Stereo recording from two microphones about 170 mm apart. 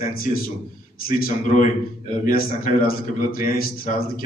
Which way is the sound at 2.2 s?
55° left (ahead or behind).